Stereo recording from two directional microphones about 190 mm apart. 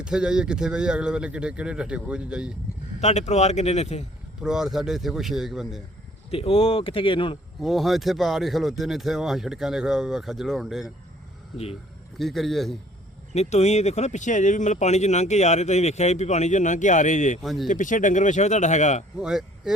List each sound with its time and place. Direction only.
0.0 s speech: 5° right (ahead or behind)
3.0 s speech: 35° left (ahead or behind)
4.4 s speech: 5° right (ahead or behind)
6.3 s speech: 30° left (ahead or behind)
7.6 s speech: centre (ahead or behind)
11.5 s speech: 30° left (ahead or behind)
12.2 s speech: centre (ahead or behind)
13.3 s speech: 35° left (ahead or behind)
17.4 s speech: centre (ahead or behind)
17.7 s speech: 40° left (ahead or behind)
19.2 s speech: 5° right (ahead or behind)